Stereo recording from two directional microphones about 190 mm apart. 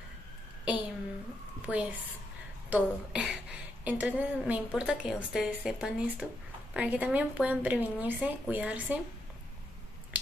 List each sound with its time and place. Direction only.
1.7 s a woman's voice: 5° right (ahead or behind)